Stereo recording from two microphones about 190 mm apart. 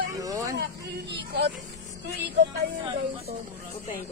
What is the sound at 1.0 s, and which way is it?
Vehicle, 60° right (ahead or behind).